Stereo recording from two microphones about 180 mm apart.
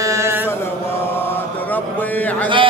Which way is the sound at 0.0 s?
15° right (ahead or behind).